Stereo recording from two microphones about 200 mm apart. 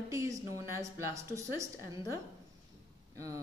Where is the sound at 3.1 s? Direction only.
15° right (ahead or behind).